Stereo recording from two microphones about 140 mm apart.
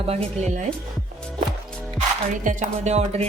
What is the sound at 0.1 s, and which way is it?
Speech, 50° right (ahead or behind).